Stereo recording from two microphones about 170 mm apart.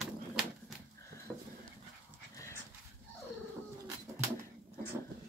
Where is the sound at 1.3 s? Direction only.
5° right (ahead or behind).